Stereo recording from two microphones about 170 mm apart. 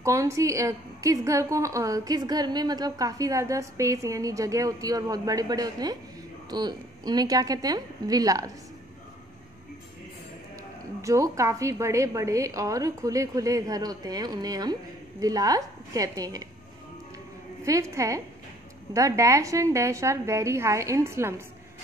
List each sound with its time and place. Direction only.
0.0 s a woman's voice: 20° right (ahead or behind)
11.0 s a woman's voice: 20° right (ahead or behind)
17.6 s a woman's voice: 20° right (ahead or behind)